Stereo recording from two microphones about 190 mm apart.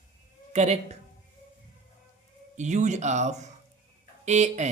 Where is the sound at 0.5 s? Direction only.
35° right (ahead or behind).